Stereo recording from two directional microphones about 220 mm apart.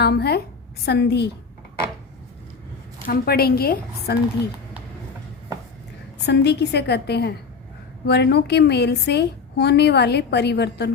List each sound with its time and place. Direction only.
0.0 s a woman's voice: 45° left (ahead or behind)
3.1 s a woman's voice: 45° left (ahead or behind)
6.2 s a woman's voice: 50° left (ahead or behind)